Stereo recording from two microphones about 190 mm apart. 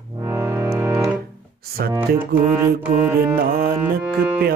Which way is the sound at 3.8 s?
10° right (ahead or behind).